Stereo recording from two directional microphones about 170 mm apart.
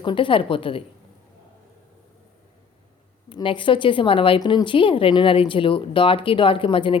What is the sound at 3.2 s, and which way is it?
Speech, 30° left (ahead or behind).